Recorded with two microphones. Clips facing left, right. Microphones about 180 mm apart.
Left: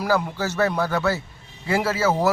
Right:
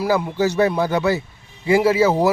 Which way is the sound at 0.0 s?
15° right (ahead or behind).